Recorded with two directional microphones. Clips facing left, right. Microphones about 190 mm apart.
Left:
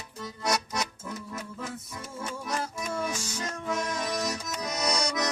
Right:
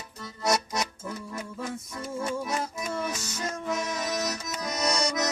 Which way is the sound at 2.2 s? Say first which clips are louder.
Right 3 dB; 5° right (ahead or behind).